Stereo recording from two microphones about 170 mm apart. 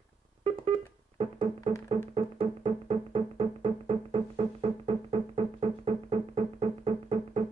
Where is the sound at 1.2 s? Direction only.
35° right (ahead or behind).